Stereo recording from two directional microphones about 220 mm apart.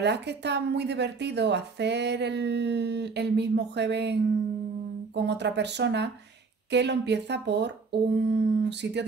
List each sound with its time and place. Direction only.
0.0 s a woman's voice: 50° right (ahead or behind)